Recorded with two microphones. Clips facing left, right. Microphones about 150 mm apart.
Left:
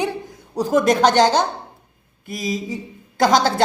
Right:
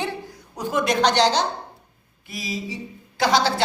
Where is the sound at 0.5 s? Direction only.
40° left (ahead or behind).